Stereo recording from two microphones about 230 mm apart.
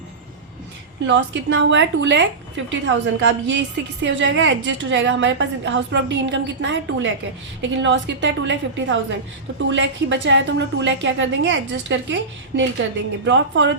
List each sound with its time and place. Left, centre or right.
1.0 s a woman's voice: right